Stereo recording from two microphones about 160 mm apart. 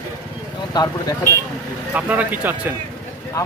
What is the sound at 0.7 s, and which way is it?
Speech, 25° left (ahead or behind).